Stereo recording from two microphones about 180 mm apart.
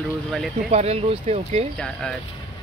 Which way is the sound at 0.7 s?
35° right (ahead or behind).